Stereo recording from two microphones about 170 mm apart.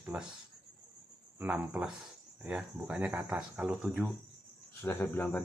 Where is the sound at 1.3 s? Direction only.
10° right (ahead or behind).